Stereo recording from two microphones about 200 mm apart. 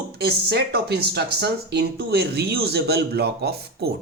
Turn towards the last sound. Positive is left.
turn(degrees=-55)  # may be behind; listen again after turning